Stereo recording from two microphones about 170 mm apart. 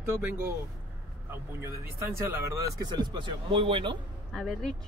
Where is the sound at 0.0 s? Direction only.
15° right (ahead or behind).